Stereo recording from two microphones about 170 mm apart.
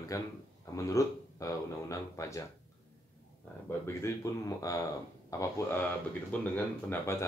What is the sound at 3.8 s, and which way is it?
Speech, 20° left (ahead or behind).